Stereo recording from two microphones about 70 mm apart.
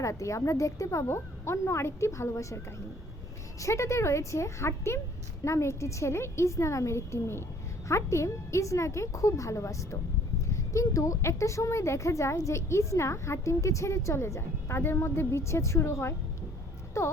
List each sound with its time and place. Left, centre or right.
0.0 s a woman's voice: left
3.6 s a woman's voice: left
16.9 s music: left